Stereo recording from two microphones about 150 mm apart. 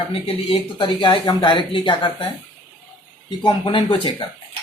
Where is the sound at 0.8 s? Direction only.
30° left (ahead or behind).